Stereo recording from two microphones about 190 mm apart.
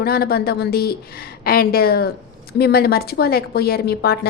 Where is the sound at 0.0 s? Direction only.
55° left (ahead or behind).